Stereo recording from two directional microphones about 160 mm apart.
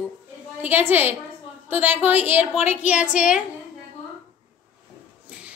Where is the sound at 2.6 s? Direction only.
45° left (ahead or behind).